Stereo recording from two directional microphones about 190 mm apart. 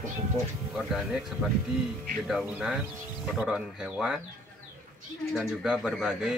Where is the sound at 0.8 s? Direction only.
Centre (ahead or behind).